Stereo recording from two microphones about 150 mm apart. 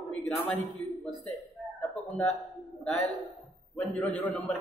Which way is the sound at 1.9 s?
5° left (ahead or behind).